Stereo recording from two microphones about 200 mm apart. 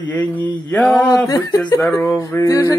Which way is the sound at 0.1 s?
10° left (ahead or behind).